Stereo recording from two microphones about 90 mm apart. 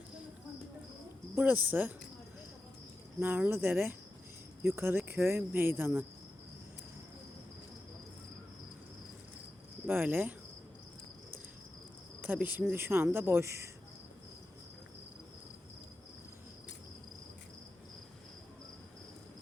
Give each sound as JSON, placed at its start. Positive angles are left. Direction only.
{"t": 1.4, "sound": "cricket", "side_deg": -20}
{"t": 3.2, "sound": "cricket", "side_deg": -20}
{"t": 9.8, "sound": "cricket", "side_deg": -25}
{"t": 12.2, "sound": "speech", "side_deg": -20}
{"t": 12.7, "sound": "cricket", "side_deg": -25}